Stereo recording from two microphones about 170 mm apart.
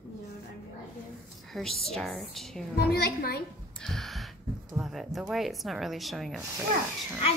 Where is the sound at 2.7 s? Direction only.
70° left (ahead or behind).